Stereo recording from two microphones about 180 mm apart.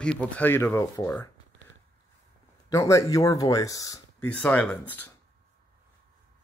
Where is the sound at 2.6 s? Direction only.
15° left (ahead or behind).